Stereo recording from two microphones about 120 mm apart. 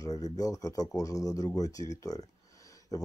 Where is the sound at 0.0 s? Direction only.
30° left (ahead or behind).